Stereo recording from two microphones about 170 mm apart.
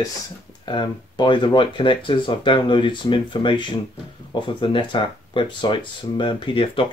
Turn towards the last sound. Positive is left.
turn(degrees=30)  # may be behind; listen again after turning